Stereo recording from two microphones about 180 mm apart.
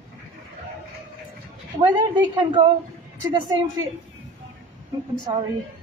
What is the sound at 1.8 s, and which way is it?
A woman's voice, 25° right (ahead or behind).